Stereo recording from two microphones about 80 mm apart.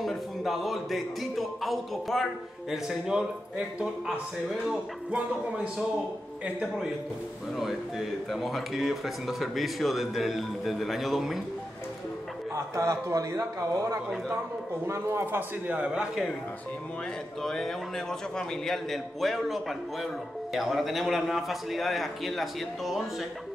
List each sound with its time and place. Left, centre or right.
0.0 s speech: centre
12.5 s a man's voice: right
15.7 s speech: centre
17.4 s speech: centre